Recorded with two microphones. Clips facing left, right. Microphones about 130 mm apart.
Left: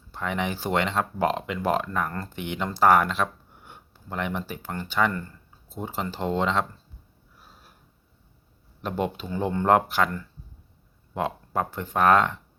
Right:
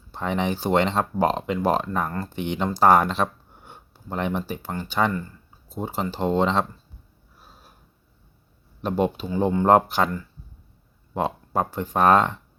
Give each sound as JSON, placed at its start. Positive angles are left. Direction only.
{"t": 0.1, "sound": "speech", "side_deg": -25}
{"t": 8.8, "sound": "speech", "side_deg": -20}
{"t": 11.1, "sound": "speech", "side_deg": -25}